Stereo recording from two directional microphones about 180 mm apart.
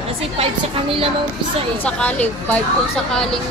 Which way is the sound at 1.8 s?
5° left (ahead or behind).